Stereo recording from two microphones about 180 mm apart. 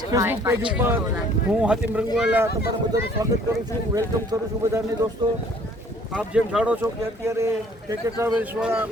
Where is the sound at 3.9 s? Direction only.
20° right (ahead or behind).